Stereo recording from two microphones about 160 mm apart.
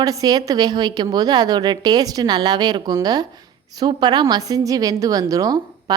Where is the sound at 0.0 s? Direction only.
25° right (ahead or behind).